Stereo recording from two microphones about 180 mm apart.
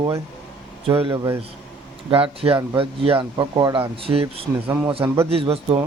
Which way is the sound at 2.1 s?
30° right (ahead or behind).